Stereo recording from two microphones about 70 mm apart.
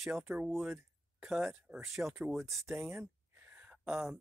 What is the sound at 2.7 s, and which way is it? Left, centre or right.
Speech, right.